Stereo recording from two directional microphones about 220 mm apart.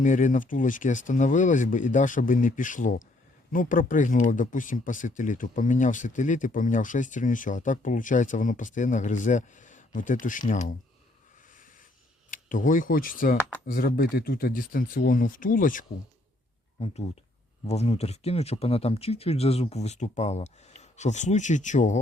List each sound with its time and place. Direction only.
0.0 s speech: 35° left (ahead or behind)
11.5 s snort: 35° left (ahead or behind)
12.3 s speech: 35° left (ahead or behind)